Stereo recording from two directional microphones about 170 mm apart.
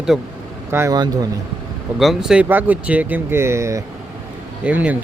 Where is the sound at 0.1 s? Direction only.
Centre (ahead or behind).